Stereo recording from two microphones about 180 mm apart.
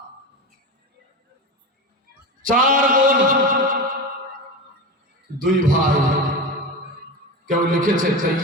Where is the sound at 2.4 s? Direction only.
50° right (ahead or behind).